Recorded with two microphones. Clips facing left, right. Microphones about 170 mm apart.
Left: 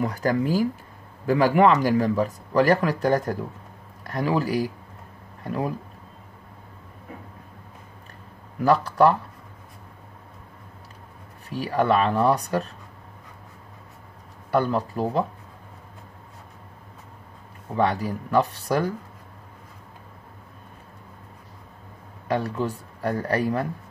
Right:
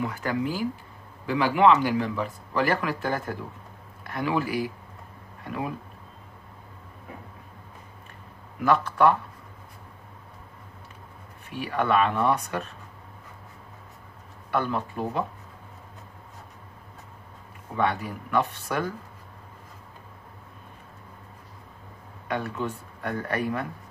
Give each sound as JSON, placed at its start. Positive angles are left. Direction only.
{"t": 0.0, "sound": "a man's voice", "side_deg": 40}
{"t": 8.6, "sound": "speech", "side_deg": 35}
{"t": 11.4, "sound": "speech", "side_deg": 35}
{"t": 14.5, "sound": "speech", "side_deg": 35}
{"t": 17.7, "sound": "speech", "side_deg": 35}
{"t": 22.3, "sound": "speech", "side_deg": 35}